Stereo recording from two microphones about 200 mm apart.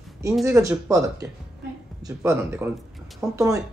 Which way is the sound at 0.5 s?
15° right (ahead or behind).